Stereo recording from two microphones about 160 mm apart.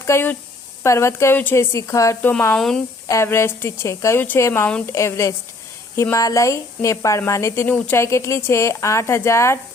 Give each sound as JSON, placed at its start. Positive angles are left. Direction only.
{"t": 0.0, "sound": "a woman's voice", "side_deg": 15}
{"t": 2.6, "sound": "speech", "side_deg": 0}
{"t": 3.1, "sound": "a woman's voice", "side_deg": 15}